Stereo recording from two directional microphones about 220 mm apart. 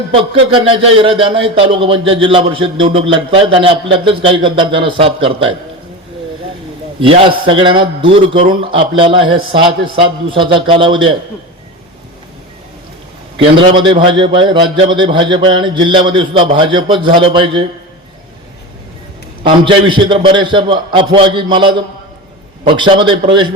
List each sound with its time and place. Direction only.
0.5 s speech: 25° right (ahead or behind)
7.0 s speech: 25° right (ahead or behind)
13.4 s speech: 25° right (ahead or behind)
19.4 s speech: 25° right (ahead or behind)